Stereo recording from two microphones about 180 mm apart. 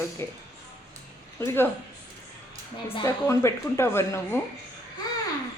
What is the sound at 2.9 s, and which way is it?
Speech, 15° left (ahead or behind).